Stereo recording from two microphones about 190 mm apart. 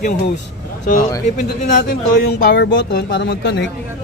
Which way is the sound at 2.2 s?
60° left (ahead or behind).